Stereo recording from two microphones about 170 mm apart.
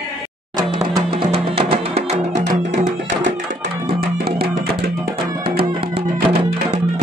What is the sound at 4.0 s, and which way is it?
Music, 65° right (ahead or behind).